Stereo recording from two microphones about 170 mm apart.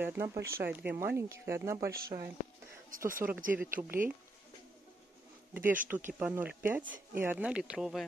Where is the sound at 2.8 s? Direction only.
55° right (ahead or behind).